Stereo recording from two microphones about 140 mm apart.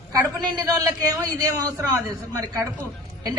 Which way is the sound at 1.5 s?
25° right (ahead or behind).